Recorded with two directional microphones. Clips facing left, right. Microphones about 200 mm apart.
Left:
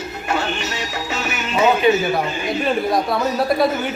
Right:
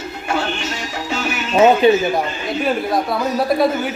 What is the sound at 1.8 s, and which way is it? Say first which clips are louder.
Speech: right 1 dB; 30° right (ahead or behind).